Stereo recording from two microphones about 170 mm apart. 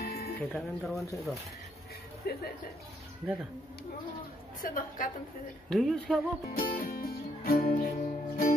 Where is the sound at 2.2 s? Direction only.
65° left (ahead or behind).